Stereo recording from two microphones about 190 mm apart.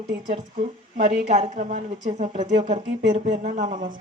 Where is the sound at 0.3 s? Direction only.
40° right (ahead or behind).